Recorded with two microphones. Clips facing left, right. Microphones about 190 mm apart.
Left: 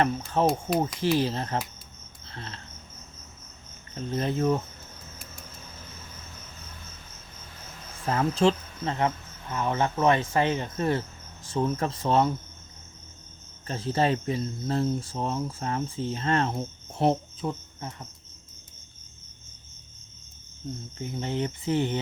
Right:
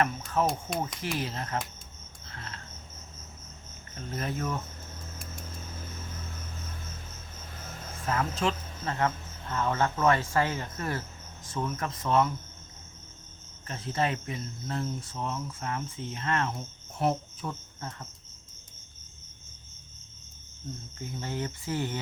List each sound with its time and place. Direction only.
0.0 s speech: 30° left (ahead or behind)
2.3 s cricket: 30° left (ahead or behind)
3.9 s speech: 25° left (ahead or behind)
8.0 s speech: 30° left (ahead or behind)
13.7 s speech: 30° left (ahead or behind); by 18.1 s 15° left (ahead or behind)
21.0 s speech: 20° left (ahead or behind)